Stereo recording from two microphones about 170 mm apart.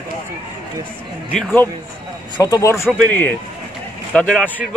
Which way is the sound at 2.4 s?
20° left (ahead or behind).